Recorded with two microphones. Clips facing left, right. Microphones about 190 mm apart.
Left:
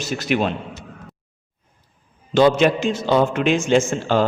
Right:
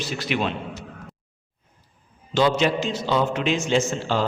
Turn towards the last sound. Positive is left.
turn(degrees=50)  # may be behind; listen again after turning